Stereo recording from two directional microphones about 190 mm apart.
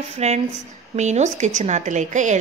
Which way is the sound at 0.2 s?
35° right (ahead or behind).